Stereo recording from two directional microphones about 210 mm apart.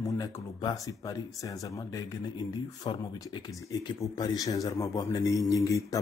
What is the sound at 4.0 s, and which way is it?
A man's voice, 15° left (ahead or behind).